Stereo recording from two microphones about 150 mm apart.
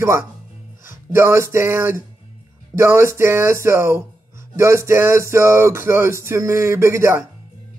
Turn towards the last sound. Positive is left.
turn(degrees=-20)  # may be behind; listen again after turning